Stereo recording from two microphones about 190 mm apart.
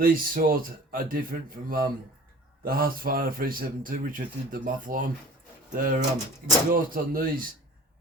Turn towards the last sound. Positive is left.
turn(degrees=-45)  # may be behind; listen again after turning